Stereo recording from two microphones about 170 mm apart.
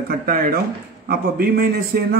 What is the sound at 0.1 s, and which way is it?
Speech, 55° right (ahead or behind).